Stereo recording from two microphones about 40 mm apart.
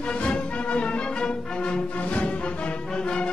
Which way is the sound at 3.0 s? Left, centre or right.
Left.